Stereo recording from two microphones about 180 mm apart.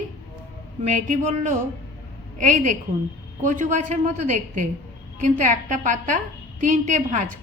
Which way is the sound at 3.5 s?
40° right (ahead or behind).